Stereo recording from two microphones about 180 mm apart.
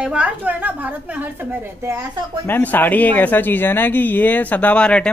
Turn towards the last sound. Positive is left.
turn(degrees=5)  # may be behind; listen again after turning